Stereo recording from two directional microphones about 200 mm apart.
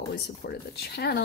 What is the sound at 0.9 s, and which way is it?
Speech, 55° left (ahead or behind).